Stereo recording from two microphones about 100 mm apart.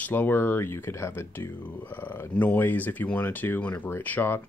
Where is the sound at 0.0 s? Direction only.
20° left (ahead or behind).